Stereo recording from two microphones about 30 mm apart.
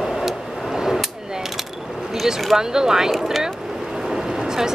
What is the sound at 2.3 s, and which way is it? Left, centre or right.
Speech, right.